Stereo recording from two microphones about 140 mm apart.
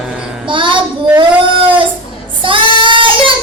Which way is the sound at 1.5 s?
35° right (ahead or behind).